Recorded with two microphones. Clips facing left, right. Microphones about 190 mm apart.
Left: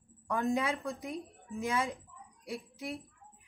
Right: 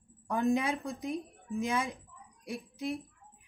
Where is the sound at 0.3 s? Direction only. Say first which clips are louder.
Right 2 dB; 20° right (ahead or behind).